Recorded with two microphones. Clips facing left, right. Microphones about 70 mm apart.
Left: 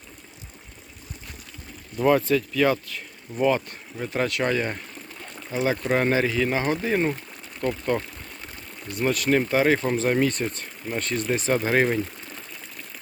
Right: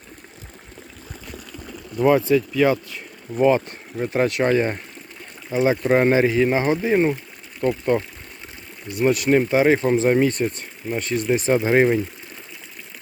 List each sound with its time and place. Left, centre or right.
2.0 s speech: centre